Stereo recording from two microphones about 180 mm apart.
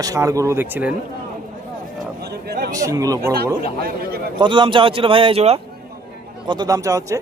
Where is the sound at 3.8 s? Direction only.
60° right (ahead or behind).